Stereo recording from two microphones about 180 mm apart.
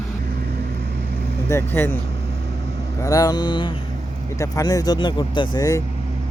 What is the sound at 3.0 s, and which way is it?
Speech, 20° left (ahead or behind).